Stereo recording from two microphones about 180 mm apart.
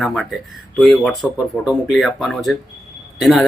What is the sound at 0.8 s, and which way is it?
Speech, centre (ahead or behind).